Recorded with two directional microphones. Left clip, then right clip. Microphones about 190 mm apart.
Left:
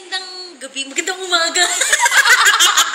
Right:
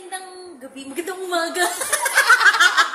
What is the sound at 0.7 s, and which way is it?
Speech, 40° right (ahead or behind).